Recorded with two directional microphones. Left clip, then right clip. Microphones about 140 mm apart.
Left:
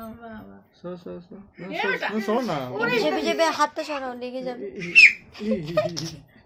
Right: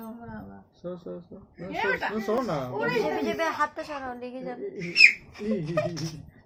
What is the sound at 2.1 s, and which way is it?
A woman's voice, 50° left (ahead or behind).